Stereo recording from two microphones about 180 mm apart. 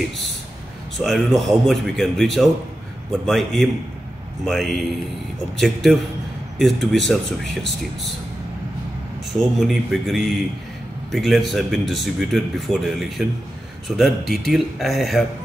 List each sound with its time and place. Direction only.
0.9 s speech: centre (ahead or behind)
9.3 s speech: centre (ahead or behind)